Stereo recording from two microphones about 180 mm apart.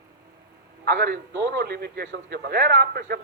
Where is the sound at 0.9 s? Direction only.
75° right (ahead or behind).